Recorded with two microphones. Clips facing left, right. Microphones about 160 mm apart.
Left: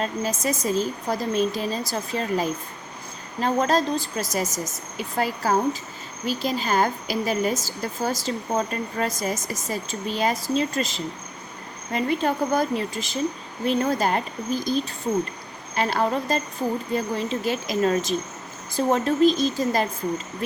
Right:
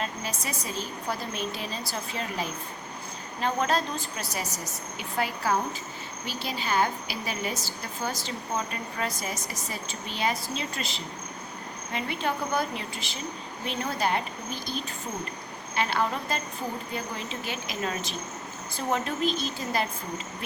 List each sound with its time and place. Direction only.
0.0 s a woman's voice: 45° left (ahead or behind)